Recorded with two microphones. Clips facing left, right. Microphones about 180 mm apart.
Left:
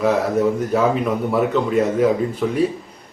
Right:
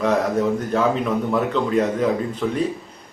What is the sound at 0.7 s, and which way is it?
A man's voice, 10° left (ahead or behind).